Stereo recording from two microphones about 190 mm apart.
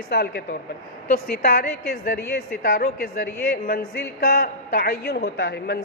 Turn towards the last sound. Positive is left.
turn(degrees=55)  # may be behind; listen again after turning